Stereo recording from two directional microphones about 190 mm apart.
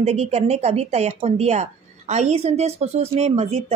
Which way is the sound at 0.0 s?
35° right (ahead or behind).